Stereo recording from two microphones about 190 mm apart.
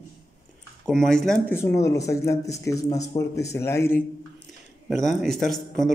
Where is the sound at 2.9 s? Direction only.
35° left (ahead or behind).